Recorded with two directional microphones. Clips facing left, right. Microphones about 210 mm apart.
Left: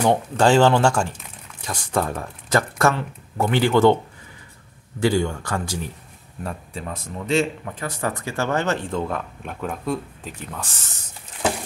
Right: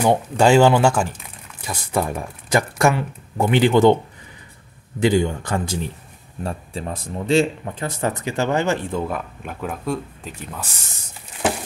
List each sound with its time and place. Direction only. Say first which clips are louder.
0.0 s speech: right 2 dB; 10° right (ahead or behind)
5.0 s speech: right 2 dB; 20° right (ahead or behind); by 10.7 s centre (ahead or behind)